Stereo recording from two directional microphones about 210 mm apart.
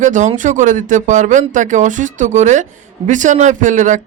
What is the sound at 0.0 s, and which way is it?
A man's voice, 35° right (ahead or behind).